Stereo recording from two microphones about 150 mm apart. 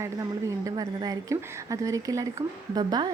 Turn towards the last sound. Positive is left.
turn(degrees=-30)  # may be behind; listen again after turning